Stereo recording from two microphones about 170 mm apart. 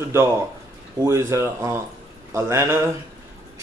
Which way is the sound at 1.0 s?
15° right (ahead or behind).